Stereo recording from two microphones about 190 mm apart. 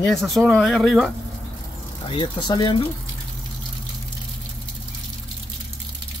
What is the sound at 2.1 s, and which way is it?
Speech, 25° left (ahead or behind).